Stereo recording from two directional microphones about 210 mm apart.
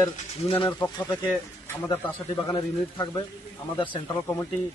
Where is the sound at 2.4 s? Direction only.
20° left (ahead or behind).